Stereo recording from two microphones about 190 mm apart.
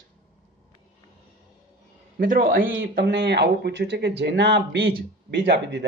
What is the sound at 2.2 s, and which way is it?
Speech, 45° right (ahead or behind).